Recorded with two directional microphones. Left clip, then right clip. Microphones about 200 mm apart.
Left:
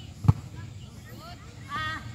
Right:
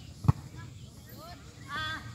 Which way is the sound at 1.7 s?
15° right (ahead or behind).